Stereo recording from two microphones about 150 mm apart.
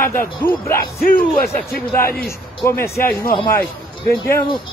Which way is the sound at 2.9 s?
80° left.